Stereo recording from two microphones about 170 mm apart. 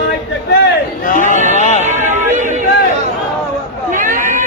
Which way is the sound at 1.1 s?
50° left (ahead or behind).